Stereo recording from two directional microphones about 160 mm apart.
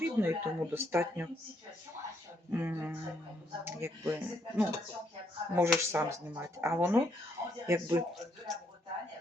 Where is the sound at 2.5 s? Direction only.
15° right (ahead or behind).